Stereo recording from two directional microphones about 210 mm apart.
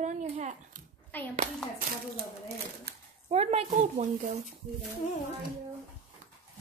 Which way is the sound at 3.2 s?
30° right (ahead or behind).